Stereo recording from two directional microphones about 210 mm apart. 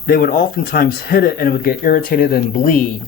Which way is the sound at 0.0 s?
45° left (ahead or behind).